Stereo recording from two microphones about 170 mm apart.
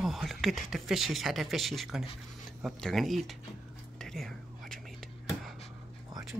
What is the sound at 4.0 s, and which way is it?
Whispering, 5° left (ahead or behind).